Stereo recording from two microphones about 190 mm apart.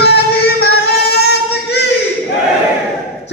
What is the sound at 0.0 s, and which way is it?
Singing, 60° left (ahead or behind).